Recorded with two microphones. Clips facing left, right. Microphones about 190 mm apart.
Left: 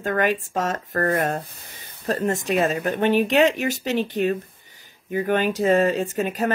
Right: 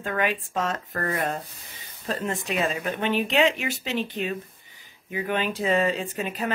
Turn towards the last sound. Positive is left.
turn(degrees=45)  # may be behind; listen again after turning